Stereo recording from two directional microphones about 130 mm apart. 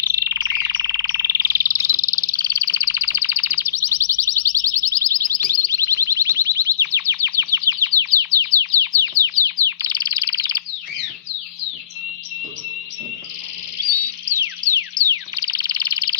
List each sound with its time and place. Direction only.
0.0 s frog: 25° right (ahead or behind)
14.2 s music: 20° right (ahead or behind)
15.0 s frog: 30° right (ahead or behind)